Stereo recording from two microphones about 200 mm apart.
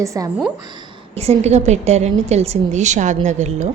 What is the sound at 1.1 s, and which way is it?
Speech, 30° right (ahead or behind).